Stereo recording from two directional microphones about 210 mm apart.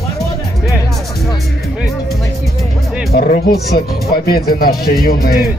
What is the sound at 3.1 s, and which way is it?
Speech, 50° left (ahead or behind).